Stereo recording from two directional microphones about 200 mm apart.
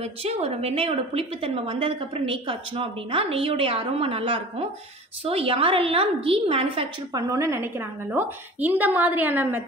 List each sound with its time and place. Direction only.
0.0 s a woman's voice: 30° right (ahead or behind); by 9.6 s 10° right (ahead or behind)